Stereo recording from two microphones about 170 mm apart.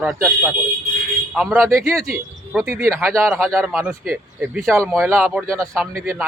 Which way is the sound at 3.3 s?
Centre (ahead or behind).